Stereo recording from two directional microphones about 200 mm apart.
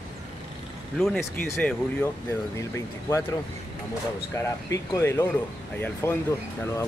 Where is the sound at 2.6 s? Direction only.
15° left (ahead or behind).